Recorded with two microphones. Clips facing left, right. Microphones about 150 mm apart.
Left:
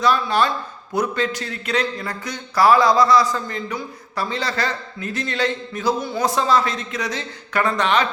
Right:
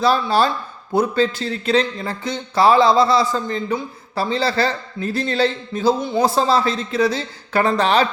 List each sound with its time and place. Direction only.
0.0 s speech: 30° right (ahead or behind)